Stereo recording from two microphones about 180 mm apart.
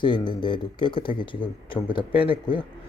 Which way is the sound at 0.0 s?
25° left (ahead or behind).